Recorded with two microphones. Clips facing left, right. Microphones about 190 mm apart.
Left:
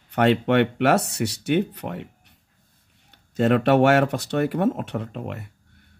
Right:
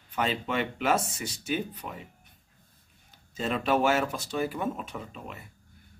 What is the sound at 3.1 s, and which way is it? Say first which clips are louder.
Speech: left 11 dB; 70° left (ahead or behind).